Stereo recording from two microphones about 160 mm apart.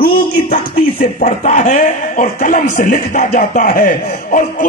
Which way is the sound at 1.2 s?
45° left (ahead or behind).